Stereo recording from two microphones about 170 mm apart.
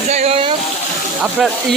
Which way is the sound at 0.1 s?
40° right (ahead or behind).